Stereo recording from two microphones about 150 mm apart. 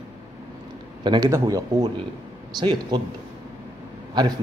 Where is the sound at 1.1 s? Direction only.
25° right (ahead or behind).